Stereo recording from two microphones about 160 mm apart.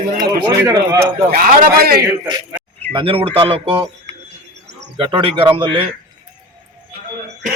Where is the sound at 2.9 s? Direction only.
30° right (ahead or behind).